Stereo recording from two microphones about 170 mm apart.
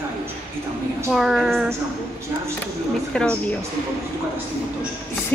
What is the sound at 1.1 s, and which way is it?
A woman's voice, centre (ahead or behind).